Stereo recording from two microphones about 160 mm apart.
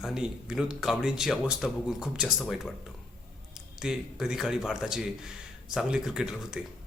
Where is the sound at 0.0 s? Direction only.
5° right (ahead or behind).